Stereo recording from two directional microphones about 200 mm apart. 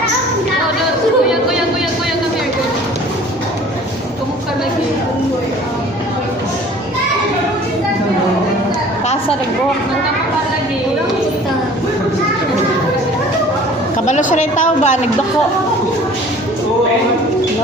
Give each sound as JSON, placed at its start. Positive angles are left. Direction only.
{"t": 14.1, "sound": "a woman's voice", "side_deg": 40}